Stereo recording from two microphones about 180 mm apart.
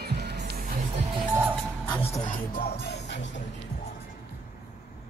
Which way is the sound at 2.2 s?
50° left (ahead or behind).